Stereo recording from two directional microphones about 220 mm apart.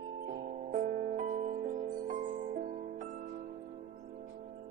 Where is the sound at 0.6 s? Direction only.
40° right (ahead or behind).